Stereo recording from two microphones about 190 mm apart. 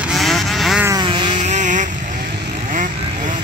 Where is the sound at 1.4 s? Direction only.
40° right (ahead or behind).